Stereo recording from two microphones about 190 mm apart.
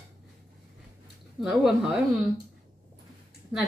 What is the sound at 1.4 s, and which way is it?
Speech, centre (ahead or behind).